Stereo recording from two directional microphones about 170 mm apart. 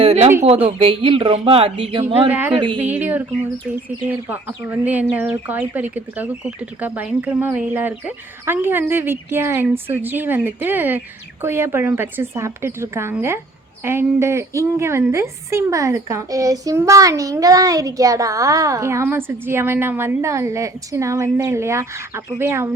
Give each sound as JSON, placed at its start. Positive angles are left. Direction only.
{"t": 0.0, "sound": "a sound", "side_deg": -35}
{"t": 0.4, "sound": "a woman's voice", "side_deg": -35}
{"t": 2.8, "sound": "a woman's voice", "side_deg": -10}